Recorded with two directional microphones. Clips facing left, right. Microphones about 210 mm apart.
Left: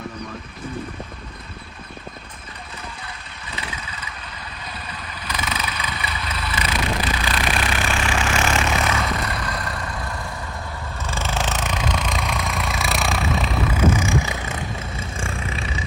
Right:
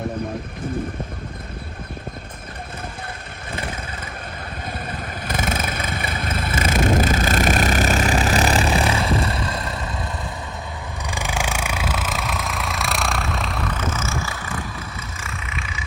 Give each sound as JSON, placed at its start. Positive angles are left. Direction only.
{"t": 3.5, "sound": "vehicle", "side_deg": -50}
{"t": 11.0, "sound": "vehicle", "side_deg": -15}
{"t": 15.2, "sound": "vehicle", "side_deg": 30}